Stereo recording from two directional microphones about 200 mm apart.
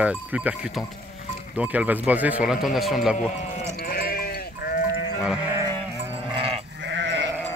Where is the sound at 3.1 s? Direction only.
35° left (ahead or behind).